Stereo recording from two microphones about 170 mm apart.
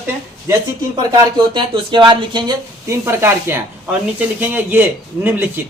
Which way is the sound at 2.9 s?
15° right (ahead or behind).